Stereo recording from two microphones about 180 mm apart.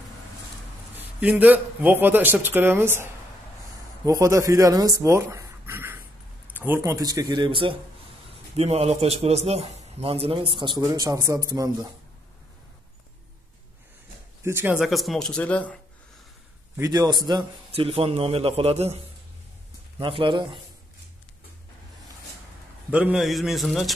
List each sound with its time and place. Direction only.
0.9 s a man's voice: 10° right (ahead or behind)
14.4 s speech: 10° right (ahead or behind); by 15.8 s 10° left (ahead or behind)
16.7 s a man's voice: 20° right (ahead or behind)
20.0 s speech: 30° right (ahead or behind)
22.8 s speech: 5° right (ahead or behind)